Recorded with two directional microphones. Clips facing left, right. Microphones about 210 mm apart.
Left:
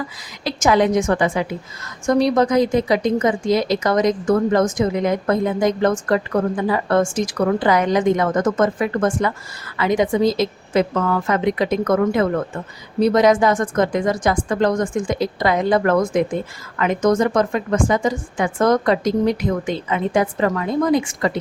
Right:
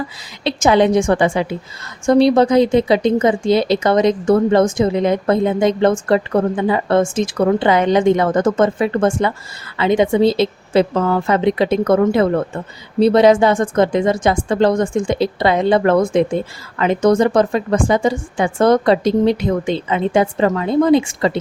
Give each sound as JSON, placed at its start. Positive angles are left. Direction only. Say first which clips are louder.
{"t": 0.4, "sound": "speech", "louder": "right 3 dB", "side_deg": -30}